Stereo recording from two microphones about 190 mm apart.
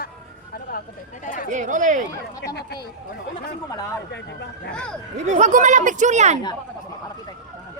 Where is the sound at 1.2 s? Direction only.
45° left (ahead or behind).